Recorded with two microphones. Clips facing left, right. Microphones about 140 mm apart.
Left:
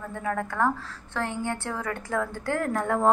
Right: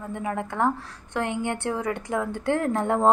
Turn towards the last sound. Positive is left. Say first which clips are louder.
# right 2 dB
turn(degrees=-25)  # may be behind; listen again after turning